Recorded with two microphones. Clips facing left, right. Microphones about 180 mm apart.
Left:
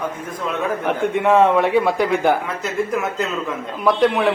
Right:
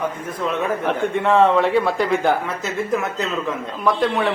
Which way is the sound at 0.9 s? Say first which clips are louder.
Left 3 dB; 15° left (ahead or behind).